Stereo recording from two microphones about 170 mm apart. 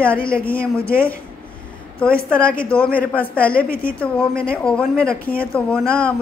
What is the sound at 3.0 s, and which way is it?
Speech, 10° left (ahead or behind).